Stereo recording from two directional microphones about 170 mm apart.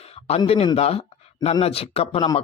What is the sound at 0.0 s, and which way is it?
Speech, 35° left (ahead or behind).